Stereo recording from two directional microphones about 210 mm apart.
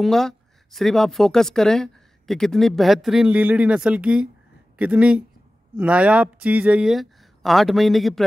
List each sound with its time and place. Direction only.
0.0 s speech: centre (ahead or behind)